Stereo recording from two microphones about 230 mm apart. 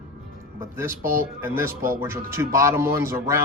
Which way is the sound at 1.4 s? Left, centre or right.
Centre.